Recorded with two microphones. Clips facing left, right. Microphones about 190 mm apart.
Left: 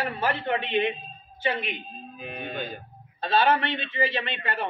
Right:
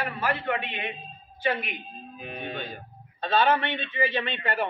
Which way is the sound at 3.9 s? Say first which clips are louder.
Right 1 dB; 35° left (ahead or behind).